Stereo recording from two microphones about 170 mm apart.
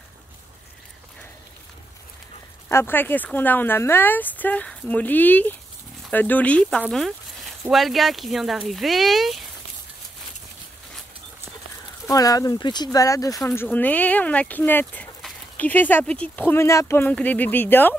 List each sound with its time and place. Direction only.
2.7 s speech: 15° left (ahead or behind)
12.1 s speech: 20° left (ahead or behind)
13.6 s speech: 10° left (ahead or behind)